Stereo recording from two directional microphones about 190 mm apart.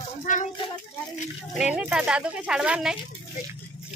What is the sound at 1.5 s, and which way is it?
Speech, 5° right (ahead or behind).